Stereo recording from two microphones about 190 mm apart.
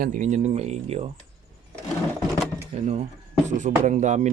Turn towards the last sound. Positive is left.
turn(degrees=-40)  # may be behind; listen again after turning